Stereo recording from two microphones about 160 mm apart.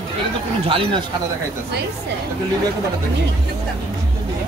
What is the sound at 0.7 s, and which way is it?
Speech, 35° right (ahead or behind).